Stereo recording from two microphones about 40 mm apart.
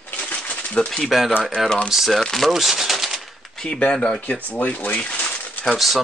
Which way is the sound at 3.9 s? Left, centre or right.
Centre.